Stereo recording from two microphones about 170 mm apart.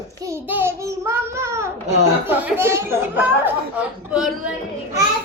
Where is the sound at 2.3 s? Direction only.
10° right (ahead or behind).